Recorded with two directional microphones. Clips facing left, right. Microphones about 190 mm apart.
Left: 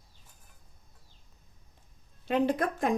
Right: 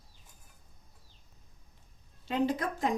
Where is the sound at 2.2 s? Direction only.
60° left (ahead or behind).